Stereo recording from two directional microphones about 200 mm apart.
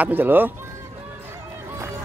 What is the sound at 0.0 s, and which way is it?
Speech, 10° right (ahead or behind).